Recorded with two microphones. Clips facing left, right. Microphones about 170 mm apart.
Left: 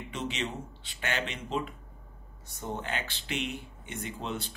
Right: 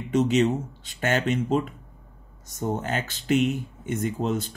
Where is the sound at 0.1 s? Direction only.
45° right (ahead or behind).